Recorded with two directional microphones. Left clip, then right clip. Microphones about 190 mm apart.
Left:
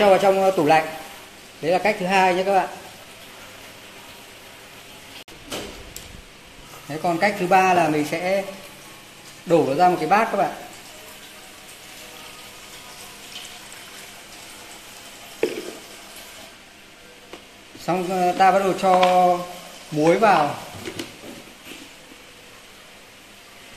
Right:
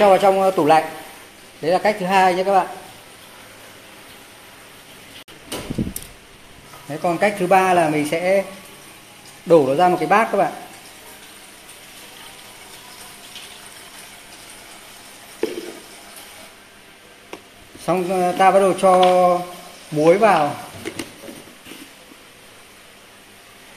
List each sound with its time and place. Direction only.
0.0 s a man's voice: 10° right (ahead or behind)
6.9 s speech: 35° right (ahead or behind)
9.5 s speech: 35° right (ahead or behind)
17.8 s speech: 35° right (ahead or behind)